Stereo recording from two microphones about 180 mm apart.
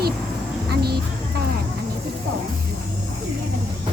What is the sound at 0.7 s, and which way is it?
Vehicle, 60° right (ahead or behind).